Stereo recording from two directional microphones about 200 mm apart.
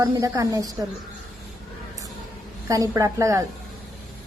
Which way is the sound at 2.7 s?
15° right (ahead or behind).